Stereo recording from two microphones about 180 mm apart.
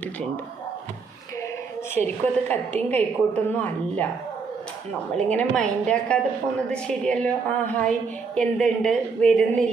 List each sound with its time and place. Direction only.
2.0 s a woman's voice: 10° left (ahead or behind)
5.1 s speech: 5° left (ahead or behind)